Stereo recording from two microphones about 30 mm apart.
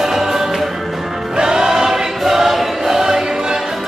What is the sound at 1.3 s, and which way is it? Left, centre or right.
Choir, right.